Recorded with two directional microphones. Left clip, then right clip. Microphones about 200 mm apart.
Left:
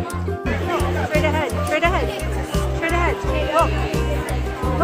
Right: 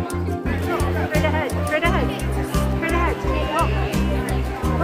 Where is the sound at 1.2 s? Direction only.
40° left (ahead or behind).